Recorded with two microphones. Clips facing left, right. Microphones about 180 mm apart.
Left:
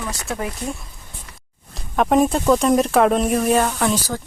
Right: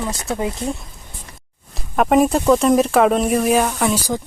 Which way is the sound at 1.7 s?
Centre (ahead or behind).